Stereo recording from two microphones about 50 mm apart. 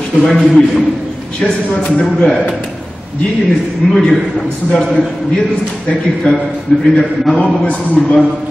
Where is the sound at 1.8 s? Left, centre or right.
Centre.